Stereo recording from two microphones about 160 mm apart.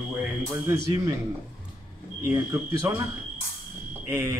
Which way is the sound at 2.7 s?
15° right (ahead or behind).